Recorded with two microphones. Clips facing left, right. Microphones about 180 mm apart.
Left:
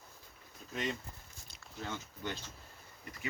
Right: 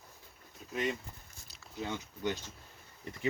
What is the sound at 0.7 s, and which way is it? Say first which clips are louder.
Speech: right 3 dB; 5° right (ahead or behind).